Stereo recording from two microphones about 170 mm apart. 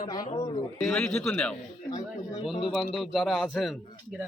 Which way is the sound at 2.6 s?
Centre (ahead or behind).